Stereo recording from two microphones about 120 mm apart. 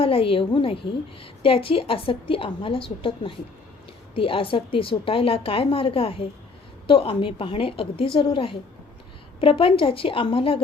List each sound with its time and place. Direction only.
0.0 s a woman's voice: 50° left (ahead or behind)